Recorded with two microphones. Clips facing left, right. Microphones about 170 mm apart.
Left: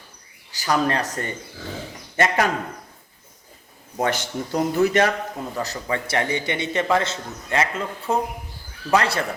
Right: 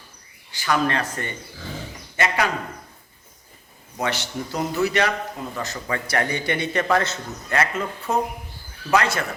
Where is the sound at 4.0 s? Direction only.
50° left (ahead or behind).